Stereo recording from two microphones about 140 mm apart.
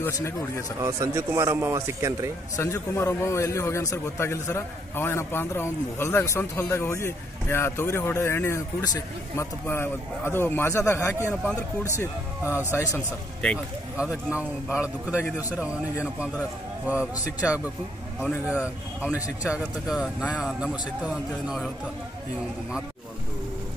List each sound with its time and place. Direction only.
0.0 s a man's voice: 20° left (ahead or behind)
0.7 s speech: 20° right (ahead or behind)
2.5 s a man's voice: 20° left (ahead or behind)
12.4 s a man's voice: 10° right (ahead or behind)
13.4 s a man's voice: 5° left (ahead or behind)
13.9 s a man's voice: 10° right (ahead or behind)